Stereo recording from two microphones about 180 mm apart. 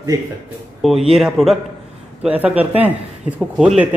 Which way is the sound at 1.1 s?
Centre (ahead or behind).